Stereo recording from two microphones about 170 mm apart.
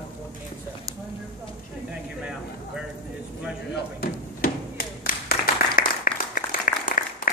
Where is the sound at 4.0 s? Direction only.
55° left (ahead or behind).